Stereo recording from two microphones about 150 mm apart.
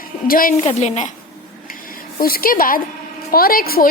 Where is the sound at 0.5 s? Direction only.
45° left (ahead or behind).